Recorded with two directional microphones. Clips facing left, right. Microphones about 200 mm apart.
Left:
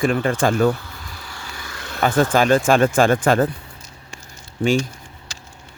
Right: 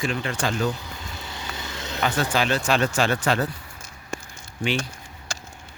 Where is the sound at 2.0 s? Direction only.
50° left (ahead or behind).